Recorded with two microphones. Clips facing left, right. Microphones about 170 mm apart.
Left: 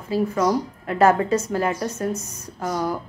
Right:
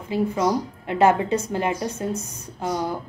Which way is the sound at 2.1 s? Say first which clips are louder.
Even; 30° right (ahead or behind).